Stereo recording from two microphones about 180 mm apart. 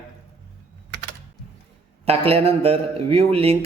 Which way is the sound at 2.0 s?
35° right (ahead or behind).